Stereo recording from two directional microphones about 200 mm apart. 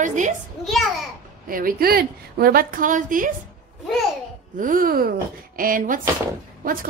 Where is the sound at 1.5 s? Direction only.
45° right (ahead or behind).